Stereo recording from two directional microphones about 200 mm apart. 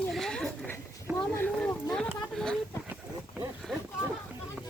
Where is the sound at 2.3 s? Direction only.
Centre (ahead or behind).